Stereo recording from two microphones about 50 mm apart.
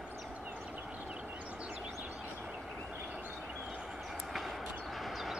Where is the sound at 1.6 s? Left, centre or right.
Right.